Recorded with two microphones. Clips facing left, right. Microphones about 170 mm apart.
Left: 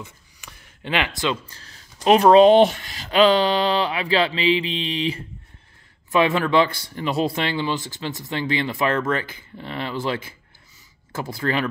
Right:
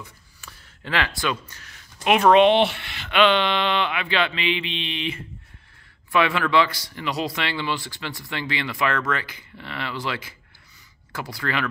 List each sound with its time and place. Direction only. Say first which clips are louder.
0.0 s speech: left 3 dB; 20° left (ahead or behind); by 10.1 s 40° left (ahead or behind)
11.1 s speech: left 4 dB; 25° left (ahead or behind)